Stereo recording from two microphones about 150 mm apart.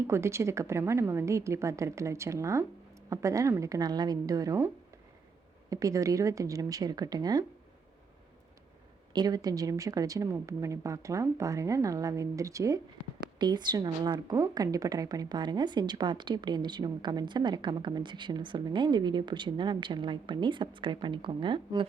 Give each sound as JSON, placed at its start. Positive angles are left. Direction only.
{"t": 0.1, "sound": "speech", "side_deg": -20}
{"t": 5.7, "sound": "speech", "side_deg": -20}
{"t": 9.1, "sound": "a woman's voice", "side_deg": -25}